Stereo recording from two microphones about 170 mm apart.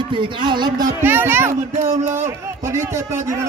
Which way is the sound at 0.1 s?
30° right (ahead or behind).